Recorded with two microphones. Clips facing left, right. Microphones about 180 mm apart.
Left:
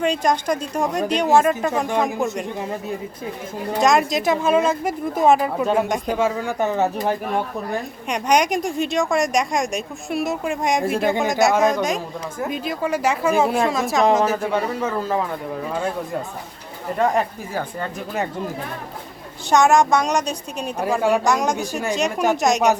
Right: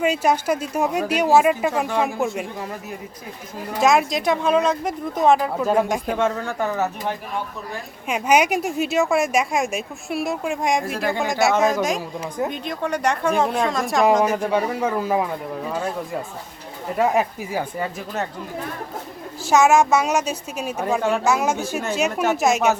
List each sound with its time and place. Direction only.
0.0 s a woman's voice: 5° right (ahead or behind)
3.8 s speech: centre (ahead or behind); by 6.9 s 25° left (ahead or behind)
8.0 s a woman's voice: 5° right (ahead or behind)
11.0 s speech: 20° left (ahead or behind)
11.3 s a woman's voice: centre (ahead or behind)
14.5 s speech: 10° right (ahead or behind)
17.0 s speech: 5° right (ahead or behind)
19.5 s a woman's voice: 5° right (ahead or behind)